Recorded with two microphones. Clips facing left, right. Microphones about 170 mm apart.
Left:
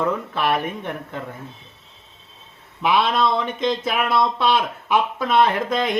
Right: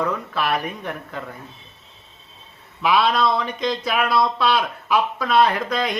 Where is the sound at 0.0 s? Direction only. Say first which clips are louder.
Left 2 dB; 25° left (ahead or behind).